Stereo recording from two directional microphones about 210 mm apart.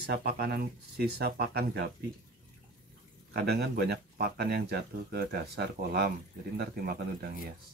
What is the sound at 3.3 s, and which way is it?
Speech, 50° right (ahead or behind).